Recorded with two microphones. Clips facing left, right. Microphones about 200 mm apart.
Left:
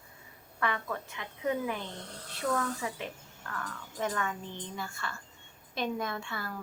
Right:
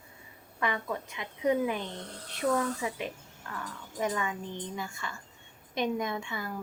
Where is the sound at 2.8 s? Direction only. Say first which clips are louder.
Right 3 dB; 15° right (ahead or behind).